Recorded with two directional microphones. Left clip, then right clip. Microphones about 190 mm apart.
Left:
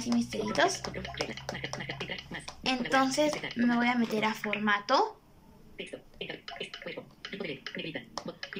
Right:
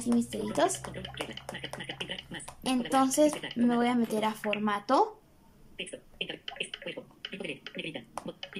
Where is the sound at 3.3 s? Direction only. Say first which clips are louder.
Even; 5° right (ahead or behind).